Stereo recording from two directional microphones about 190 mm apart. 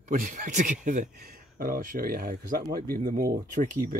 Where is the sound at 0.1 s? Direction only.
45° right (ahead or behind).